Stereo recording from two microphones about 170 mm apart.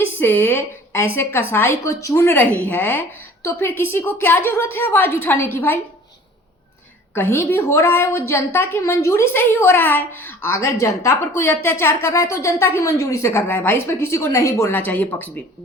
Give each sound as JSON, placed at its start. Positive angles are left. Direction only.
{"t": 0.2, "sound": "a woman's voice", "side_deg": 10}
{"t": 7.1, "sound": "a woman's voice", "side_deg": 15}